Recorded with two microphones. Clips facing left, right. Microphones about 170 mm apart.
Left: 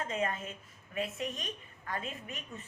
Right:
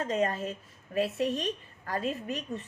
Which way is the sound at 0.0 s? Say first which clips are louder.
Right 6 dB; 35° right (ahead or behind).